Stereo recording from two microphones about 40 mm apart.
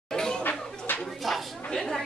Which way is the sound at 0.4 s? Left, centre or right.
Left.